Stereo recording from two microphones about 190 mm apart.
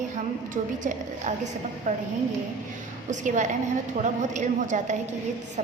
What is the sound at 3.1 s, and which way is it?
A woman's voice, 40° right (ahead or behind).